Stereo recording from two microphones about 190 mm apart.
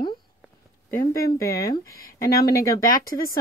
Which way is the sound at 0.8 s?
15° left (ahead or behind).